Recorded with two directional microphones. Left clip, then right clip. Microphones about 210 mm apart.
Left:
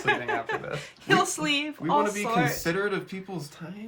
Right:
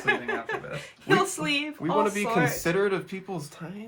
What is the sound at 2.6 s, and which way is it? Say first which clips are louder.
Speech: right 2 dB; 30° right (ahead or behind).